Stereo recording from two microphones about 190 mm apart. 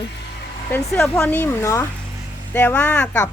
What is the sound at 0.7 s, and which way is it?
Speech, 10° left (ahead or behind).